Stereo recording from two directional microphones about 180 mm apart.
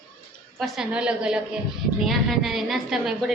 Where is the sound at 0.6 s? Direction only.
5° right (ahead or behind).